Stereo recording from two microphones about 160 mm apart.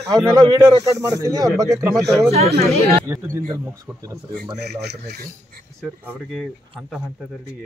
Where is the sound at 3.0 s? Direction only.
15° right (ahead or behind).